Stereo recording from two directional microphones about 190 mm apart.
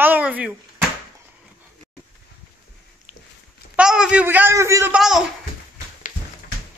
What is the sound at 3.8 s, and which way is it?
A man's voice, 5° right (ahead or behind).